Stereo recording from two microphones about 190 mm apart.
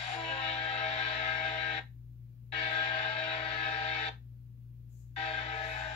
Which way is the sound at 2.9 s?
35° left (ahead or behind).